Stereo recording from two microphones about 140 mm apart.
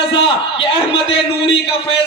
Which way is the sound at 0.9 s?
40° left (ahead or behind).